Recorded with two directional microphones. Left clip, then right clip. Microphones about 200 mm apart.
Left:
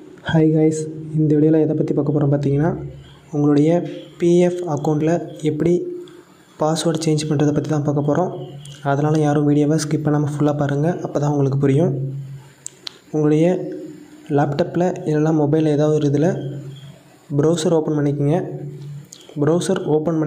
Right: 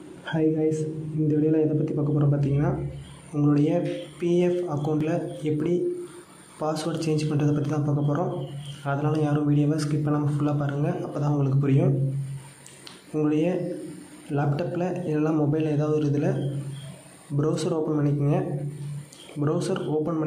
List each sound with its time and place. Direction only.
0.2 s a man's voice: 30° left (ahead or behind)
13.2 s a man's voice: 25° left (ahead or behind)
17.4 s a man's voice: 25° left (ahead or behind)
19.4 s a man's voice: 25° left (ahead or behind)